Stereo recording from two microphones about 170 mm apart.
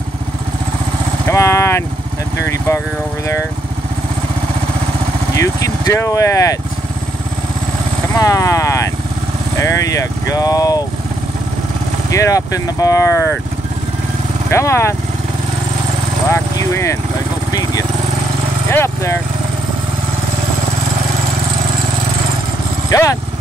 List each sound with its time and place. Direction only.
1.2 s speech: 15° left (ahead or behind)
5.4 s speech: 20° left (ahead or behind)
8.1 s speech: 20° left (ahead or behind)
12.1 s speech: 20° left (ahead or behind)
14.5 s speech: 15° left (ahead or behind)
16.3 s vehicle: 15° left (ahead or behind)
18.7 s a sound: 15° left (ahead or behind)
22.8 s vehicle: 20° left (ahead or behind)